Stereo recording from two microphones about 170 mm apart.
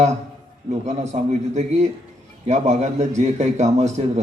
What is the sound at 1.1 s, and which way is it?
Speech, 40° right (ahead or behind).